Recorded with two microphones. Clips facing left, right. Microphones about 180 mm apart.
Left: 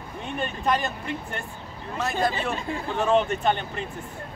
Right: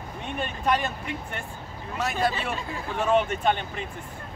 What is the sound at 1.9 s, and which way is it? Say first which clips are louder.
Speech: left 1 dB; 5° right (ahead or behind).